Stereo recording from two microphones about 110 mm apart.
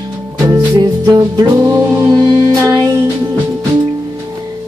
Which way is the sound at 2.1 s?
35° right (ahead or behind).